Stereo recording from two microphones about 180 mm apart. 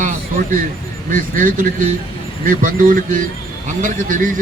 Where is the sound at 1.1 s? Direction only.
50° right (ahead or behind).